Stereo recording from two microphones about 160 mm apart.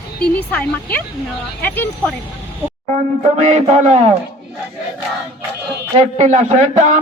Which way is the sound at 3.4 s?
45° right (ahead or behind).